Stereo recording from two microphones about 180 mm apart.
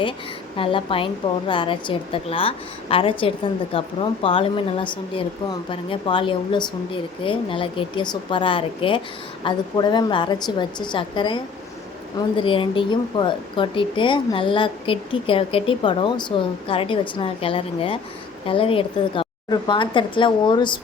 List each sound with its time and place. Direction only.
0.5 s a woman's voice: 30° left (ahead or behind)
12.4 s a woman's voice: 30° left (ahead or behind)